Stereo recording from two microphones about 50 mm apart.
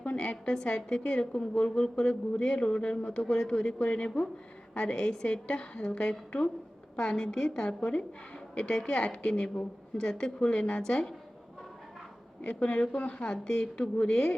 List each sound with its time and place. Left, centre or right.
0.0 s a woman's voice: left
12.4 s a woman's voice: left